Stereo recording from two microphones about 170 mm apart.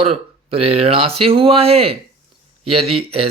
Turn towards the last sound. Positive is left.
turn(degrees=-35)  # may be behind; listen again after turning